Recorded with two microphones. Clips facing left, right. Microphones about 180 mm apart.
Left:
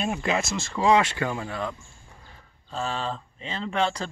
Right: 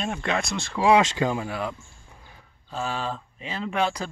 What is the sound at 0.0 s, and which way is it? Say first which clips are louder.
Speech: left 1 dB; 5° left (ahead or behind).